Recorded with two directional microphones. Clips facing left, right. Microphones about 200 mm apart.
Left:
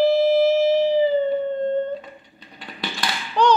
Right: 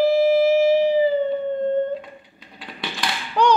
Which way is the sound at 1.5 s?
10° right (ahead or behind).